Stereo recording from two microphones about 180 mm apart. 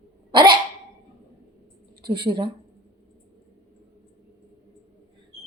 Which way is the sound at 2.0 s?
25° right (ahead or behind).